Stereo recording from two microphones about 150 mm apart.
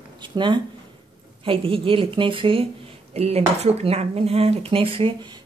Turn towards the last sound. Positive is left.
turn(degrees=-35)  # may be behind; listen again after turning